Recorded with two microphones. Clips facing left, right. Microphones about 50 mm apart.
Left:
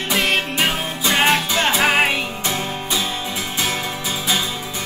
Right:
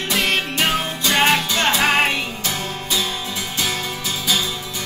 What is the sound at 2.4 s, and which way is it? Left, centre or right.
Music, left.